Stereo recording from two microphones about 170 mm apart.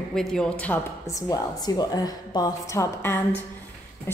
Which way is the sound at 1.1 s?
20° left (ahead or behind).